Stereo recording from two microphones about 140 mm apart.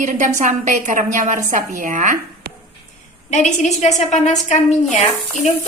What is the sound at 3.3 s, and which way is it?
A woman's voice, 60° left (ahead or behind).